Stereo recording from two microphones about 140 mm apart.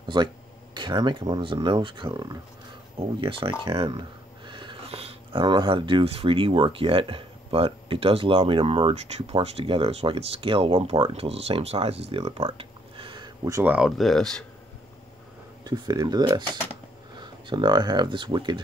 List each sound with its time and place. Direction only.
0.1 s speech: 35° right (ahead or behind)
13.7 s speech: 5° right (ahead or behind)
15.6 s speech: 30° right (ahead or behind)